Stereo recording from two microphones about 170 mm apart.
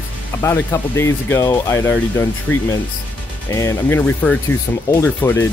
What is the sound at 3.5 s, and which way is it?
Speech, 15° left (ahead or behind).